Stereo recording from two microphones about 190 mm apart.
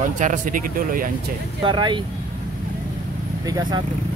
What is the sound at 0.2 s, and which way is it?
Speech, 45° right (ahead or behind).